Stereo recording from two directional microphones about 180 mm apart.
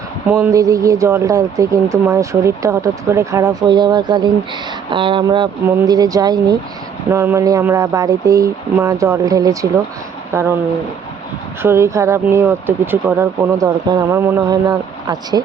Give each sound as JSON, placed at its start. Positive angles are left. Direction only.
{"t": 0.3, "sound": "speech", "side_deg": -15}
{"t": 11.6, "sound": "speech", "side_deg": -15}